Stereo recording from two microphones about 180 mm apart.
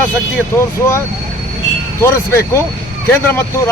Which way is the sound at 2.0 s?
15° left (ahead or behind).